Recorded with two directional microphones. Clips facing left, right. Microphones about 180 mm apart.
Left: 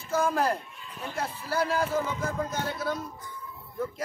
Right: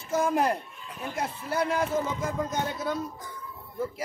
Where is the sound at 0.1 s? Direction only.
20° right (ahead or behind).